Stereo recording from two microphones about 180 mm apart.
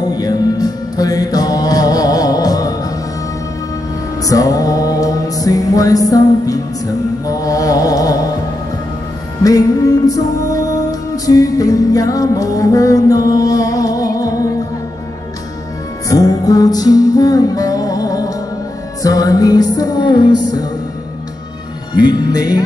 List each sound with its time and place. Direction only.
0.0 s music: 20° left (ahead or behind)
4.2 s music: 20° left (ahead or behind)
9.4 s music: 20° left (ahead or behind)
16.1 s music: 20° left (ahead or behind)
21.9 s music: 25° left (ahead or behind)